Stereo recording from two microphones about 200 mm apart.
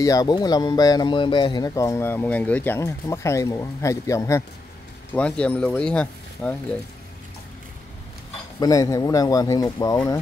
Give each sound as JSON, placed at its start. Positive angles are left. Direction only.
{"t": 0.0, "sound": "speech", "side_deg": 15}
{"t": 8.5, "sound": "speech", "side_deg": 20}